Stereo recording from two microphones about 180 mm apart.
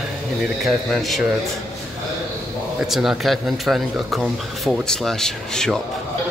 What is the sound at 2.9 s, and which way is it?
Speech, centre (ahead or behind).